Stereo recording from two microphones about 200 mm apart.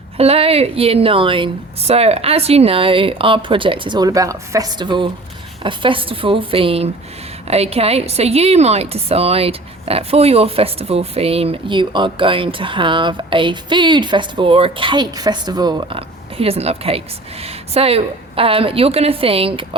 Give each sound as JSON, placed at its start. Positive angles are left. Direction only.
{"t": 0.2, "sound": "a woman's voice", "side_deg": -30}